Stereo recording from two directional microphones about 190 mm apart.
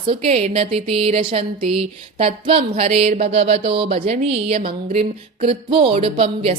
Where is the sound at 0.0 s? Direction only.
30° right (ahead or behind).